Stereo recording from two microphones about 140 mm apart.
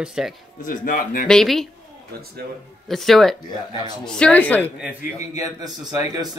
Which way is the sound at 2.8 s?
Centre (ahead or behind).